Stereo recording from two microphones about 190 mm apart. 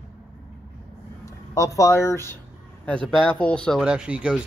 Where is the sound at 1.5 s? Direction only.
15° left (ahead or behind).